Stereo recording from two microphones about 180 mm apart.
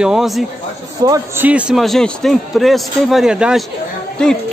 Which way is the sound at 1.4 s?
5° right (ahead or behind).